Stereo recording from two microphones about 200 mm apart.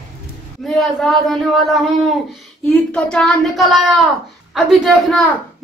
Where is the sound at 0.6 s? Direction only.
Centre (ahead or behind).